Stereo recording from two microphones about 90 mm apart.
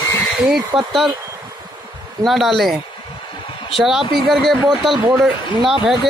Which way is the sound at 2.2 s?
5° right (ahead or behind).